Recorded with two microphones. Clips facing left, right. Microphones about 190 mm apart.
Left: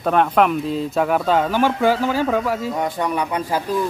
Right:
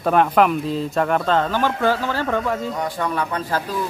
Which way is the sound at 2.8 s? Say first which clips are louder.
Left 2 dB; 15° left (ahead or behind).